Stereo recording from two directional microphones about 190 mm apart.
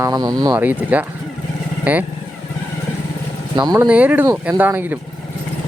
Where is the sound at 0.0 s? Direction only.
20° right (ahead or behind).